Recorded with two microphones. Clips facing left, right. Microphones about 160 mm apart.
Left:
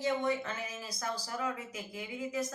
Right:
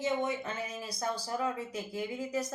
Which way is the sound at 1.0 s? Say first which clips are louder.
Right 4 dB; 30° right (ahead or behind).